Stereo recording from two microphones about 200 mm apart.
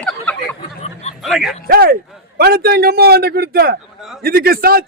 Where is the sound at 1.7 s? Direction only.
50° right (ahead or behind).